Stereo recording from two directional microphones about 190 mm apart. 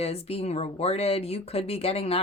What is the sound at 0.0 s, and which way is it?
A woman's voice, 30° left (ahead or behind).